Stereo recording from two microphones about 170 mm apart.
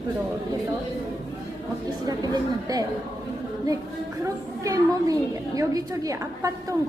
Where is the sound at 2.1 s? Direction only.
20° right (ahead or behind).